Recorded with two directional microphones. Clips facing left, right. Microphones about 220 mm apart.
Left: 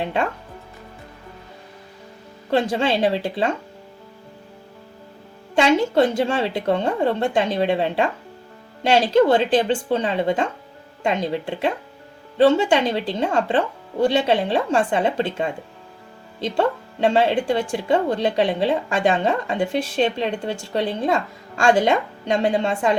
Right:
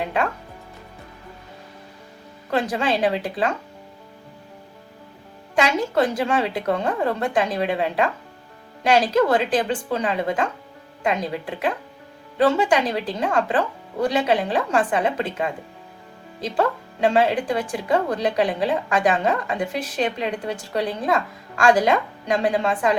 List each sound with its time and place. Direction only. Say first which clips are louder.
0.0 s speech: left 1 dB; 25° left (ahead or behind)
2.5 s speech: left 2 dB; 25° left (ahead or behind)
5.5 s speech: left 3 dB; 30° left (ahead or behind)